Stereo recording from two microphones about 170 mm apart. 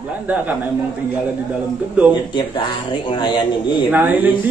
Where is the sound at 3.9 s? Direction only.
10° right (ahead or behind).